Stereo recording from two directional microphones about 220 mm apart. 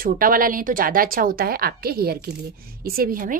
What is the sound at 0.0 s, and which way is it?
Speech, 40° right (ahead or behind).